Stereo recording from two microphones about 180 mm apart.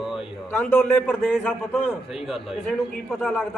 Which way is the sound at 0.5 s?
10° left (ahead or behind).